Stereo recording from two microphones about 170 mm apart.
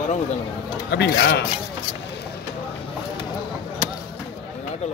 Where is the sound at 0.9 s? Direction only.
85° left.